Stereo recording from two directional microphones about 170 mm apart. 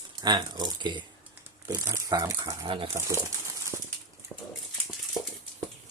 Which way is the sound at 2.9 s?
15° right (ahead or behind).